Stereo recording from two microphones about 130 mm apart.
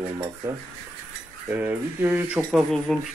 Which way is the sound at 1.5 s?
15° right (ahead or behind).